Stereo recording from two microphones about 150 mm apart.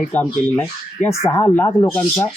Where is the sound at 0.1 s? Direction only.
10° left (ahead or behind).